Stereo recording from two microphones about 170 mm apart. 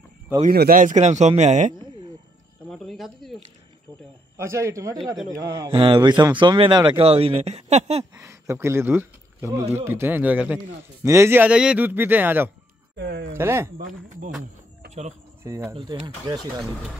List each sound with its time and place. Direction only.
0.5 s a man's voice: 60° right (ahead or behind)
2.7 s cricket: centre (ahead or behind)
4.4 s speech: 15° right (ahead or behind)
5.7 s speech: 30° right (ahead or behind)
8.0 s speech: 15° right (ahead or behind)
12.9 s speech: 85° right
13.4 s speech: 15° right (ahead or behind)
15.7 s speech: 30° right (ahead or behind)